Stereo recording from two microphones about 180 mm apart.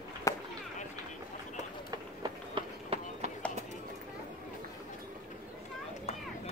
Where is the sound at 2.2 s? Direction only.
30° right (ahead or behind).